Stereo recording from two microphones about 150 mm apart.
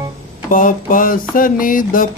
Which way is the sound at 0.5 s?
65° left (ahead or behind).